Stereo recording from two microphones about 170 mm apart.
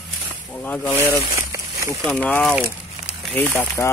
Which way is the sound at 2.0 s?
5° left (ahead or behind).